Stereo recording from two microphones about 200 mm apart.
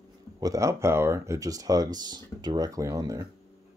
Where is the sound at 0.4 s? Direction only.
15° right (ahead or behind).